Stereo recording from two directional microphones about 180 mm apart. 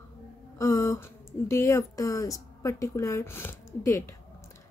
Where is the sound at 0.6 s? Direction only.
15° left (ahead or behind).